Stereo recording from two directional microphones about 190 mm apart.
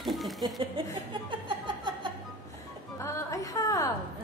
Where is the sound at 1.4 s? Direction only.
25° right (ahead or behind).